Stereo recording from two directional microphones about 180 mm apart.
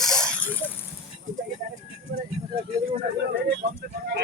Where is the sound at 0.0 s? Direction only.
5° left (ahead or behind).